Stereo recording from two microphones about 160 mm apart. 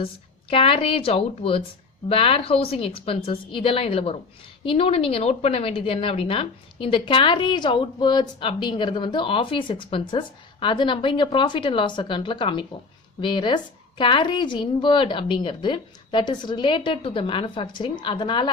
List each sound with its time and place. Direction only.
0.5 s a woman's voice: 35° left (ahead or behind)